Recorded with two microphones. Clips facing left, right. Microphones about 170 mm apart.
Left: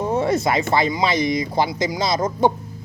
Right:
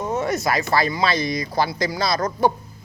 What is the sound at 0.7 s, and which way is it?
Speech, 20° left (ahead or behind).